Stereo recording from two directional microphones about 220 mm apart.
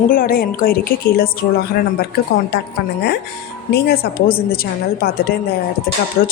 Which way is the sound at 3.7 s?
45° left (ahead or behind).